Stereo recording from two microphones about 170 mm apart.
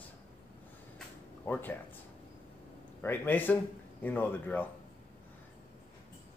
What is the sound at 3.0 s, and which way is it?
Speech, 10° left (ahead or behind).